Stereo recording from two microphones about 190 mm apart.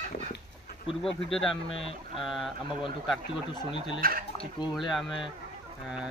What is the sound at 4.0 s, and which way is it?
Chicken, 50° right (ahead or behind).